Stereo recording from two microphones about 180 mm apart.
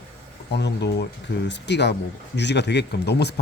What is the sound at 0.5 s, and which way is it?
Speech, 65° left (ahead or behind).